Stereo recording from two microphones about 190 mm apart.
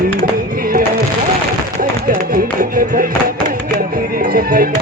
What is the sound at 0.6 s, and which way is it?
Music, 50° right (ahead or behind).